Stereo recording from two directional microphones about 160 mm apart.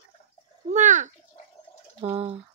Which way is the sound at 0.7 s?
50° right (ahead or behind).